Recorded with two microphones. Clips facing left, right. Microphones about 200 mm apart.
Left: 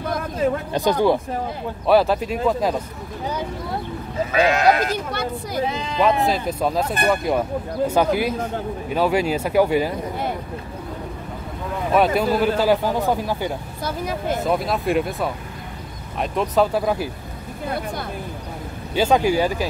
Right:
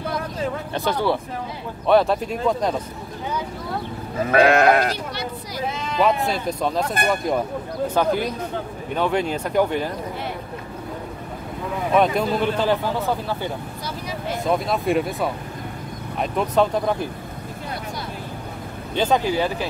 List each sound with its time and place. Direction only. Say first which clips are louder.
0.7 s speech: left 3 dB; 15° left (ahead or behind)
1.9 s speech: left 1 dB; 5° left (ahead or behind)
4.3 s sheep: right 2 dB; 60° right (ahead or behind)
5.9 s speech: left 1 dB; centre (ahead or behind)
11.9 s speech: left 1 dB; 5° left (ahead or behind)
14.4 s speech: right 2 dB; centre (ahead or behind)
18.9 s speech: left 3 dB; 10° left (ahead or behind)